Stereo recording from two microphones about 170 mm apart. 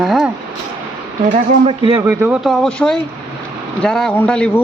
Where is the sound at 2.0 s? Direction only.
15° right (ahead or behind).